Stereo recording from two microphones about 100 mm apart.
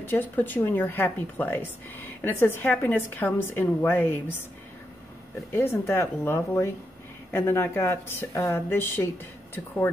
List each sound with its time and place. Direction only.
0.0 s speech: 20° left (ahead or behind)
5.5 s speech: 25° left (ahead or behind)